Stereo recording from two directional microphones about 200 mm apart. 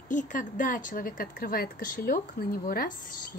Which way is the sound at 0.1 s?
40° left (ahead or behind).